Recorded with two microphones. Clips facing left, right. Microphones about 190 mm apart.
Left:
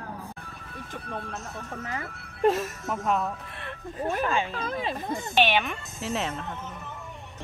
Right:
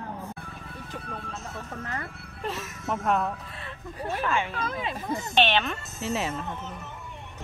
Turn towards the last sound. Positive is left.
turn(degrees=0)  # may be behind; listen again after turning